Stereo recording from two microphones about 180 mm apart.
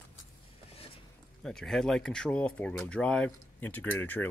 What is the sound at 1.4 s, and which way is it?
Speech, centre (ahead or behind).